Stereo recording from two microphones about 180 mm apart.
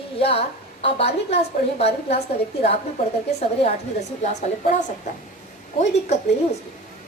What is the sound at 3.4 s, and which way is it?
A woman's voice, 40° left (ahead or behind).